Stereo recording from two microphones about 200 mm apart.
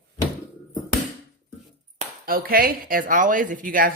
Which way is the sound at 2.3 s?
45° right (ahead or behind).